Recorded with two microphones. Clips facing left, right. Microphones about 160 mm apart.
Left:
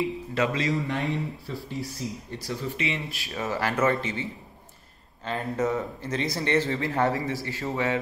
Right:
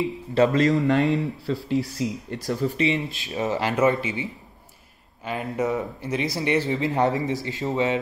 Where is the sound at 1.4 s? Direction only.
75° right (ahead or behind).